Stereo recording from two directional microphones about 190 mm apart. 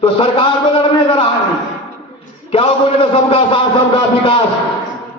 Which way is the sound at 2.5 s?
25° left (ahead or behind).